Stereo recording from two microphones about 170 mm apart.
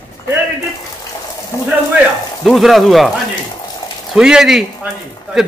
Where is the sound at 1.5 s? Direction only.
20° left (ahead or behind).